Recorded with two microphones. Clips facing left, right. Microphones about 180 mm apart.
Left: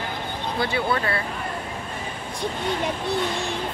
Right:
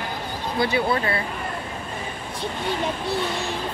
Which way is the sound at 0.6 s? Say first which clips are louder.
Right 3 dB; 20° right (ahead or behind).